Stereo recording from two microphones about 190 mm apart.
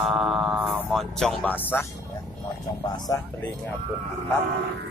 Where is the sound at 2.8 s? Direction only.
20° left (ahead or behind).